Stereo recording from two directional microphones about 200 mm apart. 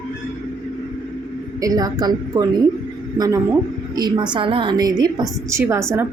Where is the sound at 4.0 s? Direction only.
20° right (ahead or behind).